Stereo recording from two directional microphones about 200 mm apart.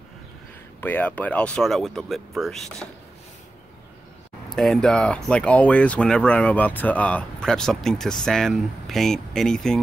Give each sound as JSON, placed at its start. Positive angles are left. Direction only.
{"t": 0.7, "sound": "speech", "side_deg": 10}
{"t": 4.6, "sound": "speech", "side_deg": 0}